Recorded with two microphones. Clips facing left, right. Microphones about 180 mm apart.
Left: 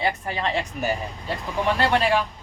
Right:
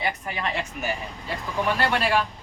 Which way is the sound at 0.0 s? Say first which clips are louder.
Left 3 dB; 30° left (ahead or behind).